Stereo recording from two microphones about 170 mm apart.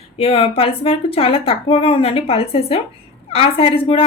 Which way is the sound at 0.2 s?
35° left (ahead or behind).